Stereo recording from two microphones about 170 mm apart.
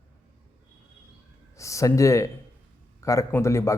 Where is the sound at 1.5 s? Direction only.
20° left (ahead or behind).